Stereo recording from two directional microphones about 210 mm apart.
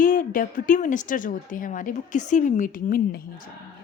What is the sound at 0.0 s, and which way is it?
A woman's voice, 40° left (ahead or behind).